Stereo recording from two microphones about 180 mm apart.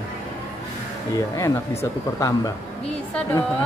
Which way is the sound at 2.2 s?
15° left (ahead or behind).